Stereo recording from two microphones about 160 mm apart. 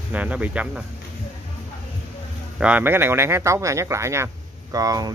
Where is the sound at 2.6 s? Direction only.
10° right (ahead or behind).